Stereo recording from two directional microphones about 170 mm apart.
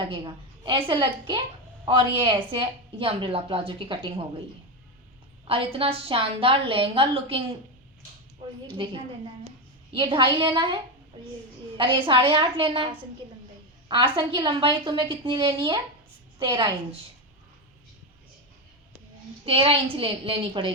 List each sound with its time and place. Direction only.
0.6 s a woman's voice: 30° right (ahead or behind)
5.5 s a woman's voice: 30° right (ahead or behind)
9.9 s a woman's voice: 30° right (ahead or behind)
11.8 s a woman's voice: 30° right (ahead or behind)
19.5 s a woman's voice: 30° right (ahead or behind)